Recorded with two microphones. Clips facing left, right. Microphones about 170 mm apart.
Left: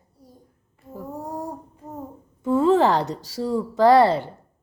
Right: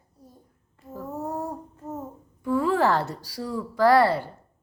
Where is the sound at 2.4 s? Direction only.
25° left (ahead or behind).